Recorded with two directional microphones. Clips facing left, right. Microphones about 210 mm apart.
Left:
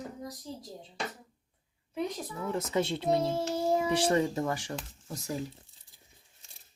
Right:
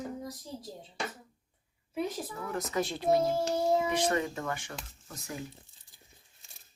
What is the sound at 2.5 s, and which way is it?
Speech, 25° left (ahead or behind).